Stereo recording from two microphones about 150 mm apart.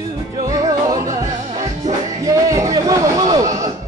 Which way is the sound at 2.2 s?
25° right (ahead or behind).